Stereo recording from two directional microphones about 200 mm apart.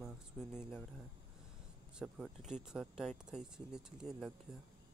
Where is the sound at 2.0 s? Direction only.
5° right (ahead or behind).